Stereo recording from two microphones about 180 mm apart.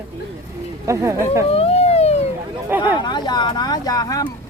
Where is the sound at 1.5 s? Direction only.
35° left (ahead or behind).